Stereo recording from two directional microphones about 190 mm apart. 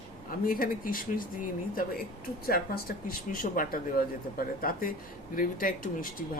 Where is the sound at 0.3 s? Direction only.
45° left (ahead or behind).